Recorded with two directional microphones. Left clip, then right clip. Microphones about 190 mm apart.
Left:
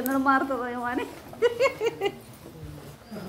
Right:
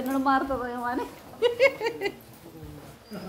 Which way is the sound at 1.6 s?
10° right (ahead or behind).